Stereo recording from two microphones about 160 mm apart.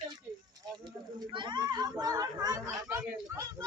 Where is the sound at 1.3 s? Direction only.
30° right (ahead or behind).